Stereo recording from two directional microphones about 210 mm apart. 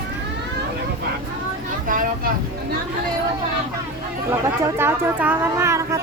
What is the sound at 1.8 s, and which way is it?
Speech, 40° right (ahead or behind).